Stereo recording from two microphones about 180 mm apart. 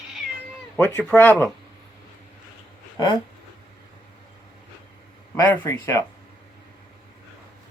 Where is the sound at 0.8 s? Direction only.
10° left (ahead or behind).